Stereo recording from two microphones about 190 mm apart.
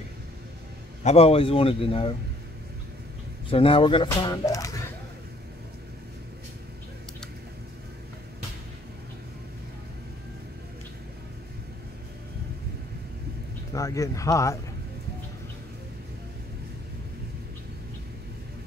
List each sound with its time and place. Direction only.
1.0 s speech: 30° left (ahead or behind)
3.4 s speech: 30° left (ahead or behind)
13.7 s speech: 15° left (ahead or behind)